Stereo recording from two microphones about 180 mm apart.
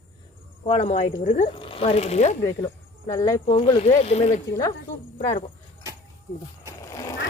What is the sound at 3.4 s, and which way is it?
Speech, 35° left (ahead or behind).